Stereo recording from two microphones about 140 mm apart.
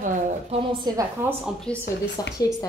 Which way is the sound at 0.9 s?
30° right (ahead or behind).